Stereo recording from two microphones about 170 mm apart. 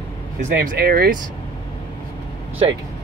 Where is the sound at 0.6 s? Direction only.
65° right (ahead or behind).